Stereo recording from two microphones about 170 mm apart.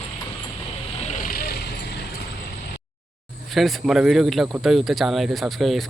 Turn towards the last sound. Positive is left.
turn(degrees=0)  # may be behind; listen again after turning